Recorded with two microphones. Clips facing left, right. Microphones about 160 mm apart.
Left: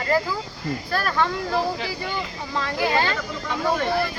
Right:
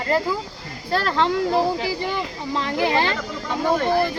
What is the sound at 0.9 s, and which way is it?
Speech, 25° right (ahead or behind).